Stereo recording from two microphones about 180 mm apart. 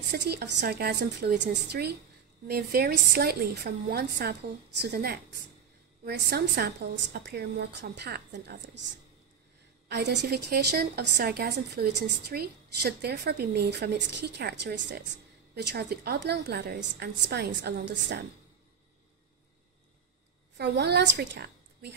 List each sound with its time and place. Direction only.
0.1 s a woman's voice: 65° right (ahead or behind)
9.8 s a woman's voice: 70° right (ahead or behind)
20.5 s a woman's voice: 70° right (ahead or behind)